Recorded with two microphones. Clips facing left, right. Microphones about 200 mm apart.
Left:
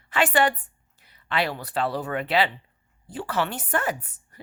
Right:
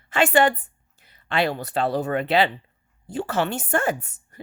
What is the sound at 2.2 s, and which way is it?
A woman's voice, 25° right (ahead or behind).